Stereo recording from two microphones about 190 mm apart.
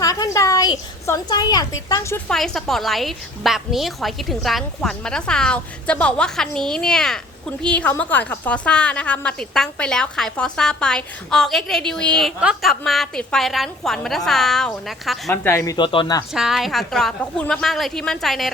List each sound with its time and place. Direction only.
0.0 s speech: 20° left (ahead or behind)
2.3 s a woman's voice: centre (ahead or behind)
15.4 s speech: 15° left (ahead or behind)
16.3 s a woman's voice: centre (ahead or behind)